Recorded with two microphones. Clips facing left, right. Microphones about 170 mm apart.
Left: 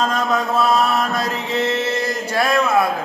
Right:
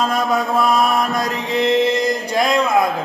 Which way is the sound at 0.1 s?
10° right (ahead or behind).